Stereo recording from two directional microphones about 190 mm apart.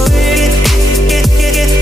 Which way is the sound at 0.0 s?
Centre (ahead or behind).